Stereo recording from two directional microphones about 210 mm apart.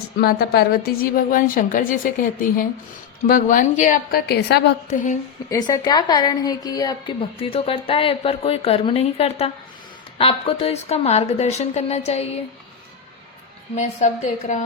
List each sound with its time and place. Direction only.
0.2 s a woman's voice: 50° left (ahead or behind)
5.5 s a woman's voice: 20° left (ahead or behind)
13.7 s a woman's voice: 35° left (ahead or behind)